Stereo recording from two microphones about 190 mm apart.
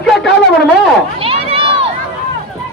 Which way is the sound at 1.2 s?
30° right (ahead or behind).